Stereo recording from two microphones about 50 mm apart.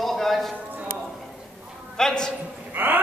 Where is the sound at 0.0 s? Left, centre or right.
Centre.